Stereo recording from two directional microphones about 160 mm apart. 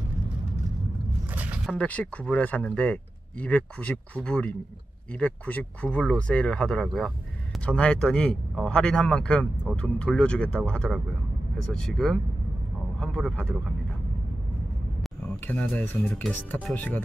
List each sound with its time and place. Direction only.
1.3 s a sound: 10° right (ahead or behind)
1.7 s speech: 10° left (ahead or behind)
15.4 s speech: 10° left (ahead or behind)